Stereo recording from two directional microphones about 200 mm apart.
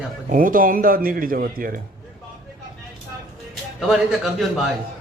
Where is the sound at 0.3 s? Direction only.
45° right (ahead or behind).